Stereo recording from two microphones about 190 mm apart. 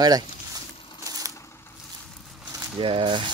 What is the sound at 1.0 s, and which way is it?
Coin, 20° right (ahead or behind).